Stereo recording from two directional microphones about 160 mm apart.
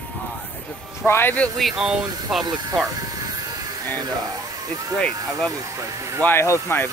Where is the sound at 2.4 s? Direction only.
25° right (ahead or behind).